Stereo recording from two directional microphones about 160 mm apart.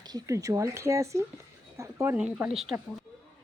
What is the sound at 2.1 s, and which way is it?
Speech, 5° right (ahead or behind).